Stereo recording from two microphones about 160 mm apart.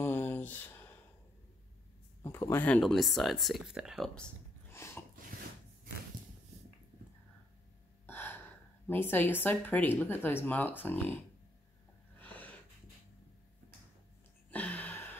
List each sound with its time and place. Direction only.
0.0 s a sound: 15° left (ahead or behind)
2.2 s speech: 15° left (ahead or behind)
8.1 s gasp: 10° left (ahead or behind)
8.8 s speech: 15° left (ahead or behind)
12.2 s snort: 10° left (ahead or behind)
14.5 s a sound: 10° left (ahead or behind)